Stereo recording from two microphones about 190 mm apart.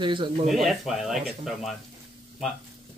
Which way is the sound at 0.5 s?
Centre (ahead or behind).